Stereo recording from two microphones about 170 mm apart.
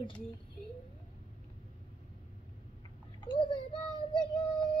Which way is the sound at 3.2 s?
30° left (ahead or behind).